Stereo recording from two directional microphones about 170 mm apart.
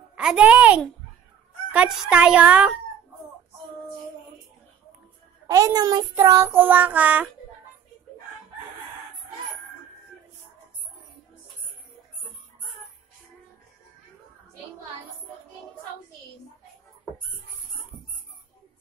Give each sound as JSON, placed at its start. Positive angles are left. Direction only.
{"t": 0.1, "sound": "a child's voice", "side_deg": -5}
{"t": 1.7, "sound": "child singing", "side_deg": -5}
{"t": 5.5, "sound": "child singing", "side_deg": -20}